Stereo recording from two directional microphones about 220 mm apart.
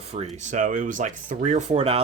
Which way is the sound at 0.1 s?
30° right (ahead or behind).